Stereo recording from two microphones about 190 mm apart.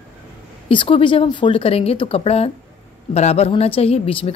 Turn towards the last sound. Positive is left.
turn(degrees=30)  # may be behind; listen again after turning